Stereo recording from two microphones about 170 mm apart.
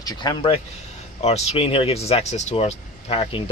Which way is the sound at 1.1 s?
40° left (ahead or behind).